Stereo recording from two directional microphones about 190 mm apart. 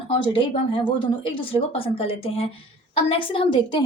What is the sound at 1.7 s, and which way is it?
A woman's voice, 30° left (ahead or behind).